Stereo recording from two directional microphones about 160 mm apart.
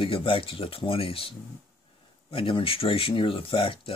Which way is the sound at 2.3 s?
35° left (ahead or behind).